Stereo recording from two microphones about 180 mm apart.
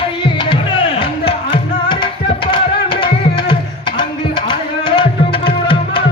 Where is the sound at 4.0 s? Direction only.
25° left (ahead or behind).